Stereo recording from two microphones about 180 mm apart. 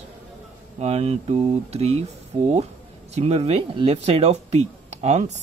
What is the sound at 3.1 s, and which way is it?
Speech, 35° right (ahead or behind).